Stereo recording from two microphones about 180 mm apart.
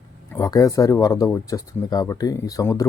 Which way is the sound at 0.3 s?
20° left (ahead or behind).